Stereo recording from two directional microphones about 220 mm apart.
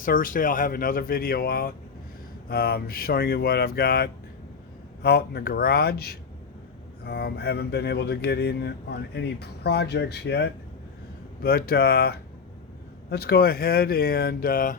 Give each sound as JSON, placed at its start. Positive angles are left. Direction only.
{"t": 0.0, "sound": "speech", "side_deg": 40}